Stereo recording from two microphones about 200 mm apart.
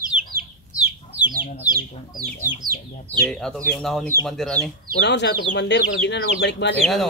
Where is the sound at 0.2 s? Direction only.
45° right (ahead or behind).